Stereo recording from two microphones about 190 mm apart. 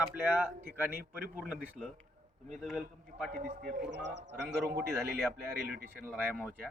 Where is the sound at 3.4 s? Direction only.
50° right (ahead or behind).